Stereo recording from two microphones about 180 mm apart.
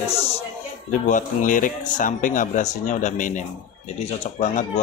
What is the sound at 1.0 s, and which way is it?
Speech, 45° left (ahead or behind).